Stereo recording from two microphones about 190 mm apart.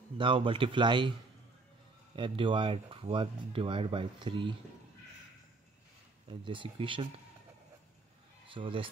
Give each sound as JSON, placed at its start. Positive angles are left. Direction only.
{"t": 0.2, "sound": "speech", "side_deg": -25}
{"t": 2.1, "sound": "speech", "side_deg": -25}
{"t": 6.4, "sound": "speech", "side_deg": -25}
{"t": 8.5, "sound": "speech", "side_deg": -25}